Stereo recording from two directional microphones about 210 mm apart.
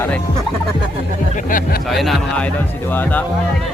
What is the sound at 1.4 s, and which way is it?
Speech, 40° left (ahead or behind).